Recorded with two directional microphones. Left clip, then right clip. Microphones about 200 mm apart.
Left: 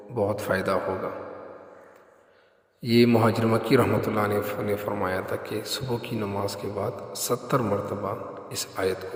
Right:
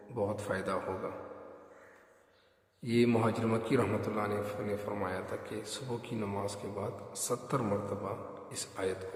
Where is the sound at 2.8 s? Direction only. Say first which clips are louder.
Left 9 dB; 35° left (ahead or behind).